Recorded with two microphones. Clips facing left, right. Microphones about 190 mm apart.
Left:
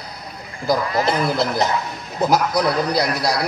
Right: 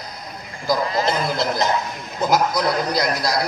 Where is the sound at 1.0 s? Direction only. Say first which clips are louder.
Left 2 dB; 30° left (ahead or behind).